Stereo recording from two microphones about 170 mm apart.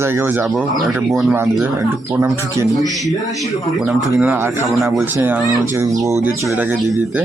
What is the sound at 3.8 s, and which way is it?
Speech, 10° right (ahead or behind).